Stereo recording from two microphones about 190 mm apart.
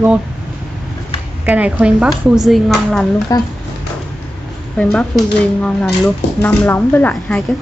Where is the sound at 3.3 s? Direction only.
20° left (ahead or behind).